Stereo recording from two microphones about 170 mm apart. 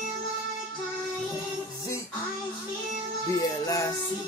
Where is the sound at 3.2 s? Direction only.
20° left (ahead or behind).